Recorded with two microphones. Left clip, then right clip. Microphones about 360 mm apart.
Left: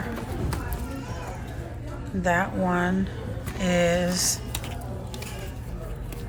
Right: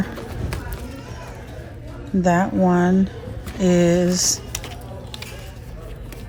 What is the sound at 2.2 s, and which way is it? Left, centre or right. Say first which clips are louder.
A woman's voice: right 5 dB; centre.